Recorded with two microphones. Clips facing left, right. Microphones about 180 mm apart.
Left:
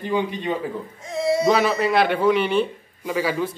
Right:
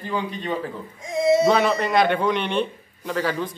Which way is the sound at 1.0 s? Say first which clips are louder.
Right 3 dB; 15° right (ahead or behind).